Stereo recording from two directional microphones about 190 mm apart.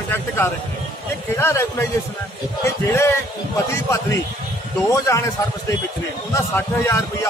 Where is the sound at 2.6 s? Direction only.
15° left (ahead or behind).